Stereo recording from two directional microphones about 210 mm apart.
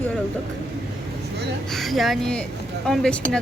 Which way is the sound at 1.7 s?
Centre (ahead or behind).